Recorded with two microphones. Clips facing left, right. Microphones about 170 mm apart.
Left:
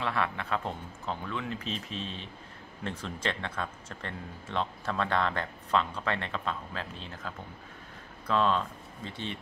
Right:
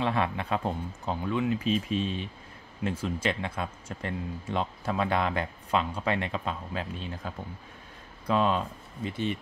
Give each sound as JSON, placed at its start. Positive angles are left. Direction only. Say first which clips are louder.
{"t": 0.0, "sound": "speech", "louder": "right 4 dB", "side_deg": -20}